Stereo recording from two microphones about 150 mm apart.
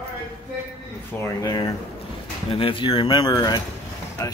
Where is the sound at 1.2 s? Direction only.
25° left (ahead or behind).